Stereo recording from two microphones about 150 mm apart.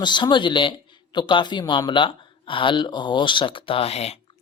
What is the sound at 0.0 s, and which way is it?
A woman's voice, 30° left (ahead or behind).